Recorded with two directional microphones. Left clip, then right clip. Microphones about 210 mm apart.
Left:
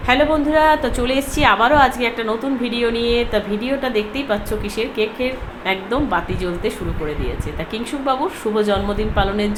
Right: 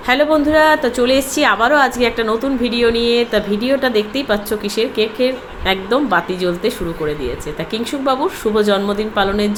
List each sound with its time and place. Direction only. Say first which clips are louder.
0.1 s a woman's voice: right 2 dB; 20° right (ahead or behind)
8.0 s a woman's voice: right 3 dB; 15° right (ahead or behind)